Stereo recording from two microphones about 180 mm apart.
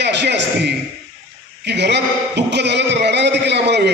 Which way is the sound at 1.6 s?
70° right (ahead or behind).